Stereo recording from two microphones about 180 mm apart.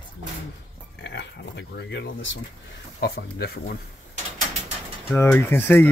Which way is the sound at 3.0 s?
60° left (ahead or behind).